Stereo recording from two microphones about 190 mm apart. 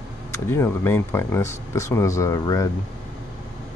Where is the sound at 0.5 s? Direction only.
15° left (ahead or behind).